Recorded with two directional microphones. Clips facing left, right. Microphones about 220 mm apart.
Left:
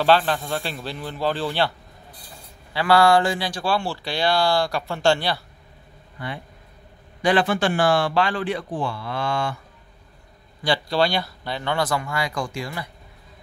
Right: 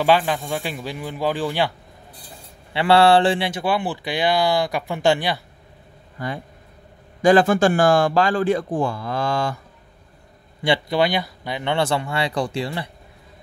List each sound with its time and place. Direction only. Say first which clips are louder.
0.0 s speech: right 1 dB; 10° right (ahead or behind)
2.7 s speech: right 2 dB; 25° right (ahead or behind)
6.1 s speech: right 4 dB; 40° right (ahead or behind)
10.6 s speech: right 2 dB; 20° right (ahead or behind)